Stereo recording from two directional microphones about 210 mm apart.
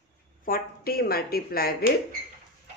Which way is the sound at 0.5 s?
45° left (ahead or behind).